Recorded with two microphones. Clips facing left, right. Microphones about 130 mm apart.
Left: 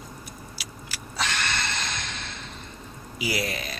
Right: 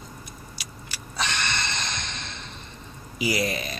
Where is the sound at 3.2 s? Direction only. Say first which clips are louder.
Right 3 dB; 5° left (ahead or behind).